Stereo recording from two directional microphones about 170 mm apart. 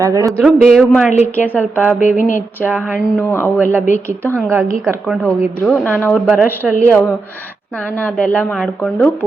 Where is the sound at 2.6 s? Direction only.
Centre (ahead or behind).